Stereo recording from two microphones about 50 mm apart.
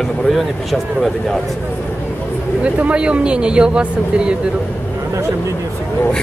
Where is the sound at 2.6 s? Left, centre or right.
Right.